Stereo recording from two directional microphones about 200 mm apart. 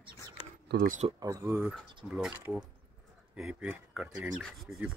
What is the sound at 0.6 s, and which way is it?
Speech, 40° right (ahead or behind).